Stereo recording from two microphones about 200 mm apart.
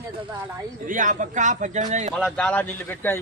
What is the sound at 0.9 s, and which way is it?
A man's voice, 40° right (ahead or behind).